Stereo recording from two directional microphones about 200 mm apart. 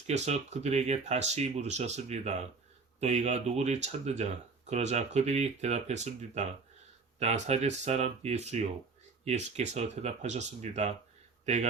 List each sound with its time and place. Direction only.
0.1 s speech: 35° right (ahead or behind)